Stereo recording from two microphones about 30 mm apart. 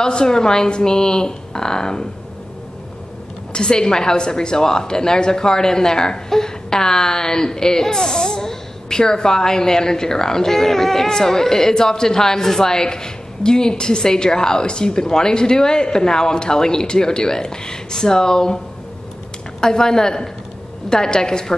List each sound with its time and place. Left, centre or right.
0.0 s a woman's voice: left
3.5 s a woman's voice: left
19.6 s a woman's voice: left